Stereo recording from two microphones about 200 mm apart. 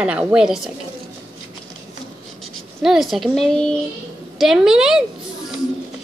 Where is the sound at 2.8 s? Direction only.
Centre (ahead or behind).